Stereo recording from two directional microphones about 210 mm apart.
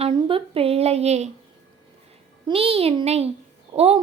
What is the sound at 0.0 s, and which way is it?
A woman's voice, 25° right (ahead or behind).